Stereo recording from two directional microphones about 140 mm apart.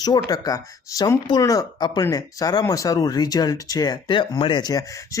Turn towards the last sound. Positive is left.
turn(degrees=25)  # may be behind; listen again after turning